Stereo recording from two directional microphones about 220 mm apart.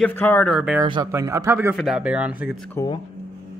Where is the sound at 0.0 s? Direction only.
10° left (ahead or behind).